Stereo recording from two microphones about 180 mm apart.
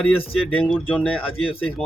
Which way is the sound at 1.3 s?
30° left (ahead or behind).